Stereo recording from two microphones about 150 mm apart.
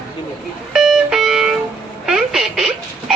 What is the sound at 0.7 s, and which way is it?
Music, 5° right (ahead or behind).